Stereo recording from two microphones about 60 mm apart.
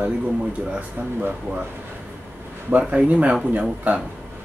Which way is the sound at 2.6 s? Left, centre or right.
Right.